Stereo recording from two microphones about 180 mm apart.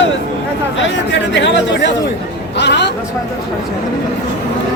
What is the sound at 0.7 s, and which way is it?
Speech, 90° left.